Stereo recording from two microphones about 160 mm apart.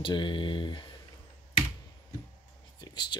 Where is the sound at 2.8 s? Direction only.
30° left (ahead or behind).